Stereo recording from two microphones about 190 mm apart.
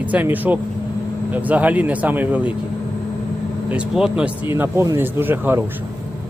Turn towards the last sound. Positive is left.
turn(degrees=-10)  # may be behind; listen again after turning